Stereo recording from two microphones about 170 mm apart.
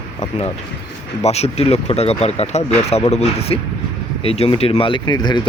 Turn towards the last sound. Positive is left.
turn(degrees=25)  # may be behind; listen again after turning